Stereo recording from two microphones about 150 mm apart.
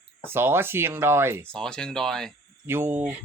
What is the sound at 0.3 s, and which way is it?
Speech, 15° right (ahead or behind).